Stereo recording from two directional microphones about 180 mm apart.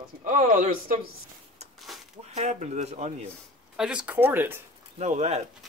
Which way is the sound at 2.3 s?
40° right (ahead or behind).